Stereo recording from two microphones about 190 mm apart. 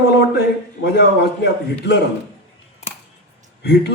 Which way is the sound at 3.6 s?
60° left (ahead or behind).